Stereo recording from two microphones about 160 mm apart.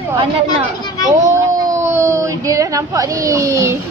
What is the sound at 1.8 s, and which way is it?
Speech, 15° right (ahead or behind).